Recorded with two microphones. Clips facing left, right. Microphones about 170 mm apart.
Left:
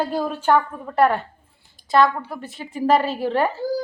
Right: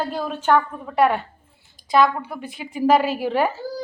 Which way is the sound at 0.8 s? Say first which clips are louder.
Even; centre (ahead or behind).